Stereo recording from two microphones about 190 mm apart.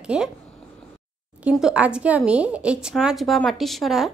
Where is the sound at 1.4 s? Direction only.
5° right (ahead or behind).